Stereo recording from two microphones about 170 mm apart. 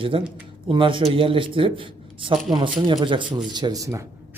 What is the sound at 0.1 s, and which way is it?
A man's voice, 30° right (ahead or behind).